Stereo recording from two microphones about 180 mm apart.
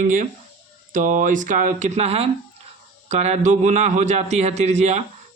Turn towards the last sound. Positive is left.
turn(degrees=-40)  # may be behind; listen again after turning